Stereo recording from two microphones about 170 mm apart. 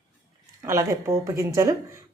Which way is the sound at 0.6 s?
15° right (ahead or behind).